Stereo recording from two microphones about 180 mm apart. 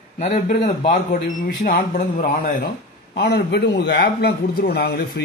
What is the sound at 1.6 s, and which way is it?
Speech, 50° left (ahead or behind).